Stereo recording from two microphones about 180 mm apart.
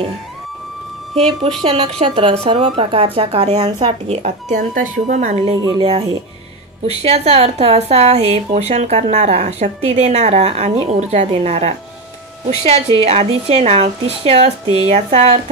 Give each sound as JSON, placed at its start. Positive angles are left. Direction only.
{"t": 1.6, "sound": "a woman's voice", "side_deg": -30}
{"t": 5.6, "sound": "a woman's voice", "side_deg": -25}